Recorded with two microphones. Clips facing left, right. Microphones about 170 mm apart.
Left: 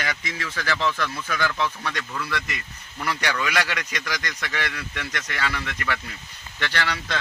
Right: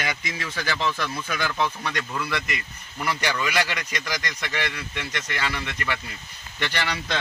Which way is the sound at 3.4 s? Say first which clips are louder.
Even; 25° right (ahead or behind).